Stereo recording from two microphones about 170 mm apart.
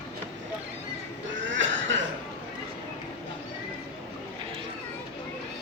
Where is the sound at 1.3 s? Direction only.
90° right.